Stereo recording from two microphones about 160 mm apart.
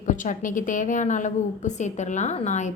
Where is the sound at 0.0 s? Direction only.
55° left (ahead or behind).